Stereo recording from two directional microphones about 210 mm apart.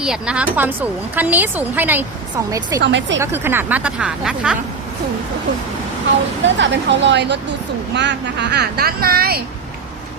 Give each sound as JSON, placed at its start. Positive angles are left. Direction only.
{"t": 0.0, "sound": "speech", "side_deg": -5}
{"t": 2.5, "sound": "speech", "side_deg": -20}
{"t": 2.8, "sound": "speech", "side_deg": -55}
{"t": 3.2, "sound": "speech", "side_deg": -10}
{"t": 6.4, "sound": "speech", "side_deg": -60}